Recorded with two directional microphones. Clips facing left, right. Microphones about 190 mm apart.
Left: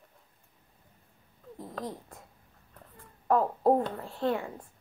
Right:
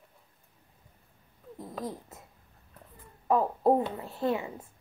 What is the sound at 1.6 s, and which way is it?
Speech, 5° right (ahead or behind).